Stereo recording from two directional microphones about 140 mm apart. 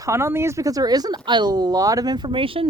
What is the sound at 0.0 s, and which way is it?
Speech, 20° right (ahead or behind).